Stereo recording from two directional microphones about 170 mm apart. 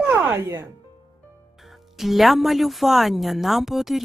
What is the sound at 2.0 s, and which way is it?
Speech, centre (ahead or behind).